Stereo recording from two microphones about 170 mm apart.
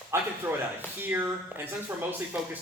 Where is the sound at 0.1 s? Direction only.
15° right (ahead or behind).